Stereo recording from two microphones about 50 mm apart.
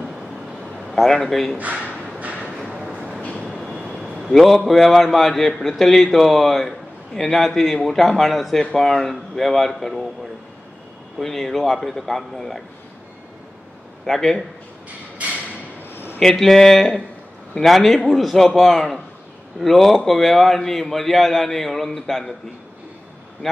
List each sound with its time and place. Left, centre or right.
0.9 s a man's voice: centre
1.6 s speech: right
2.0 s a sound: right
3.2 s train: left
3.4 s train: centre
3.8 s a sound: centre
4.3 s a man's voice: centre
11.1 s a man's voice: centre
14.0 s a man's voice: centre
15.9 s a sound: left
16.2 s a man's voice: centre
23.4 s speech: centre